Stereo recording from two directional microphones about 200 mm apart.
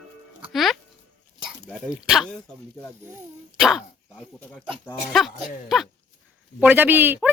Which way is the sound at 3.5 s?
5° right (ahead or behind).